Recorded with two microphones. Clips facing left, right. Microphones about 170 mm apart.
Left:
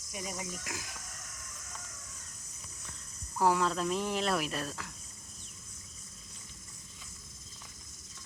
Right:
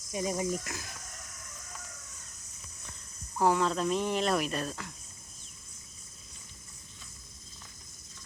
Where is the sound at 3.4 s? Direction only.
5° left (ahead or behind).